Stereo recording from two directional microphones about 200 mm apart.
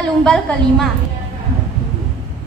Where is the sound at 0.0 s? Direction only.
5° left (ahead or behind).